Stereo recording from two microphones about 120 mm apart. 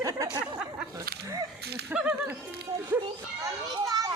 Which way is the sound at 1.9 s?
10° right (ahead or behind).